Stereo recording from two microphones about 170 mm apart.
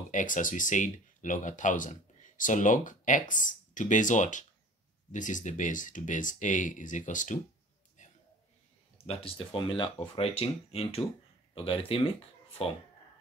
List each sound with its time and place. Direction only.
0.1 s speech: 50° left (ahead or behind)
8.0 s a sound: 45° left (ahead or behind)
8.9 s speech: 35° left (ahead or behind)